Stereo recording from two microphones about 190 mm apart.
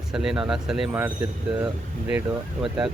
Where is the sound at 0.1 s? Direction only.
5° right (ahead or behind).